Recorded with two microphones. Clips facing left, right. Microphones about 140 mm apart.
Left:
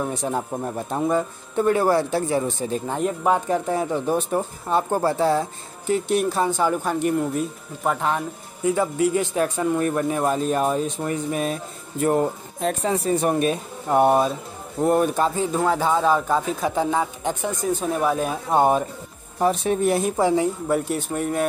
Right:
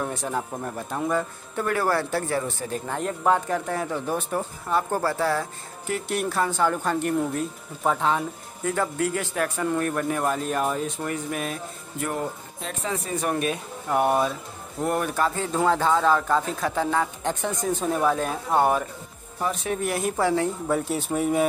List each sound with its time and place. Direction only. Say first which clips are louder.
0.0 s speech: left 3 dB; 15° left (ahead or behind)
8.6 s speech: left 5 dB; 15° left (ahead or behind)
15.5 s speech: right 2 dB; 5° left (ahead or behind)
20.6 s speech: left 2 dB; centre (ahead or behind)